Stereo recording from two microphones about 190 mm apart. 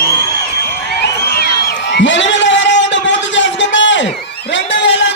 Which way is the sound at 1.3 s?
55° left (ahead or behind).